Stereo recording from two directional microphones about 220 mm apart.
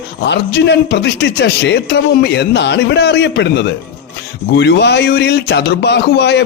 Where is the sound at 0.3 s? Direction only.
50° left (ahead or behind).